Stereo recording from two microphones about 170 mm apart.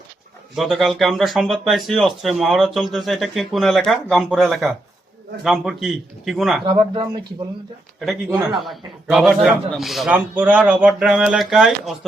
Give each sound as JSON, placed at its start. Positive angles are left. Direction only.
{"t": 0.5, "sound": "speech", "side_deg": 0}
{"t": 6.7, "sound": "speech", "side_deg": -30}
{"t": 8.4, "sound": "speech", "side_deg": 0}